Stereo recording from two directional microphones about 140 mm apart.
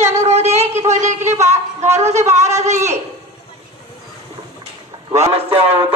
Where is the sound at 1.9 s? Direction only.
55° right (ahead or behind).